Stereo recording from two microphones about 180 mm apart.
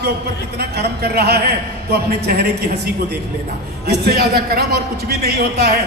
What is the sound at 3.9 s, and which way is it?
Speech, 60° right (ahead or behind).